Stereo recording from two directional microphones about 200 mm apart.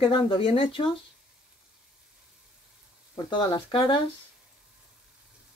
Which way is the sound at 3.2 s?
25° left (ahead or behind).